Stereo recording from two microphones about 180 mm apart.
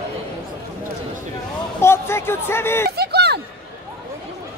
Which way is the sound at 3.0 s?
65° right (ahead or behind).